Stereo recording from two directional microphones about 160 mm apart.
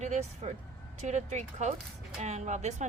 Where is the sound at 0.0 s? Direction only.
45° right (ahead or behind).